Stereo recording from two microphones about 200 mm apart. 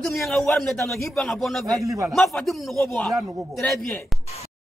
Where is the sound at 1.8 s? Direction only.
15° right (ahead or behind).